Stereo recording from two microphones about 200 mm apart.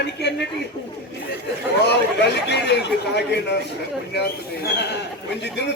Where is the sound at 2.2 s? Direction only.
55° left (ahead or behind).